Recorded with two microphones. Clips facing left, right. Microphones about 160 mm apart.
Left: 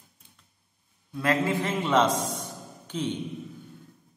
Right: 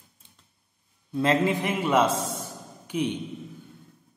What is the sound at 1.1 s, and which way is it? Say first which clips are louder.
A man's voice: right 3 dB; 20° right (ahead or behind).